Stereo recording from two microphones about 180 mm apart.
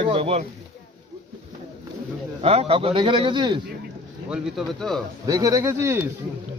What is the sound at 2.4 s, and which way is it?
A man's voice, 35° right (ahead or behind).